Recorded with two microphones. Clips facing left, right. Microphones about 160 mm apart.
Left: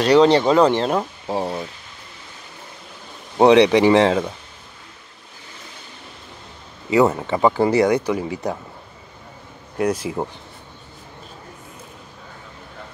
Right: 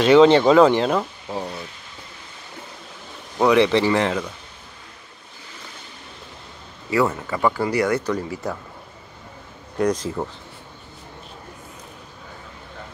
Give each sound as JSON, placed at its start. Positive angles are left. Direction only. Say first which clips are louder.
{"t": 0.4, "sound": "speech", "louder": "right 2 dB", "side_deg": 0}
{"t": 1.2, "sound": "a sound", "louder": "left 5 dB", "side_deg": 35}
{"t": 3.3, "sound": "speech", "louder": "left 4 dB", "side_deg": 30}
{"t": 3.6, "sound": "speech", "louder": "left 5 dB", "side_deg": 15}
{"t": 4.0, "sound": "speech", "louder": "left 6 dB", "side_deg": 30}
{"t": 6.9, "sound": "speech", "louder": "left 4 dB", "side_deg": 20}
{"t": 8.0, "sound": "speech", "louder": "left 2 dB", "side_deg": 10}
{"t": 9.8, "sound": "speech", "louder": "even", "side_deg": 10}